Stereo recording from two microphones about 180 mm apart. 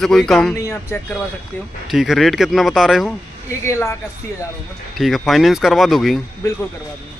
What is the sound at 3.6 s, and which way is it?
Speech, 15° left (ahead or behind).